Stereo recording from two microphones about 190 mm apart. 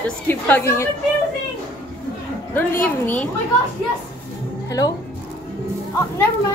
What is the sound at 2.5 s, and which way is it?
Speech, 10° left (ahead or behind).